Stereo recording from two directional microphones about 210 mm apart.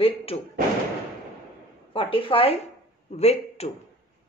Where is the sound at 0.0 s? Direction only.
25° left (ahead or behind).